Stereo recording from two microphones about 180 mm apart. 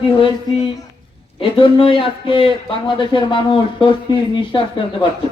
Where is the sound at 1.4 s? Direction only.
30° left (ahead or behind).